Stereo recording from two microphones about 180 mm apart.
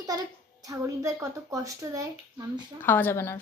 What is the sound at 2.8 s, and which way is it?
Speech, 10° left (ahead or behind).